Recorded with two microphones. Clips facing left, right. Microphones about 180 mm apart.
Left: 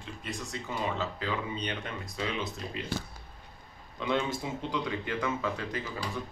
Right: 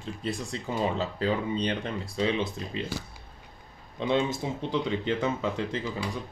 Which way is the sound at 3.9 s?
25° right (ahead or behind).